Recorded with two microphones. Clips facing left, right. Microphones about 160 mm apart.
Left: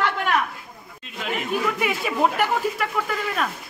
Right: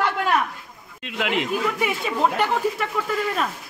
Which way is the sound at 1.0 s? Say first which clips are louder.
Right 5 dB; 85° right.